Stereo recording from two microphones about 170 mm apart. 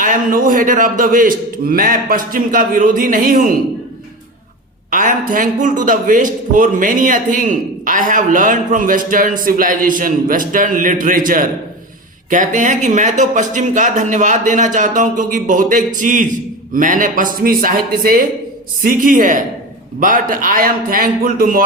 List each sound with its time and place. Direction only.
0.0 s a man's voice: 55° right (ahead or behind)
4.9 s a man's voice: 50° right (ahead or behind)